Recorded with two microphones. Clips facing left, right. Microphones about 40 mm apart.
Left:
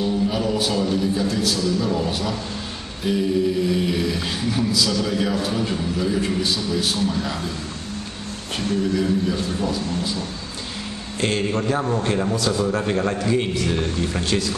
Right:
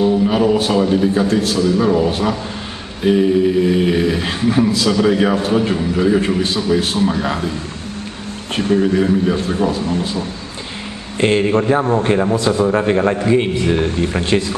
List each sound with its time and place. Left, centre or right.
0.0 s a man's voice: right
8.7 s a man's voice: right
11.1 s a man's voice: right